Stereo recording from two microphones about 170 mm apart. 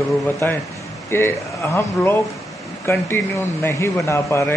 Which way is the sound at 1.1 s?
15° left (ahead or behind).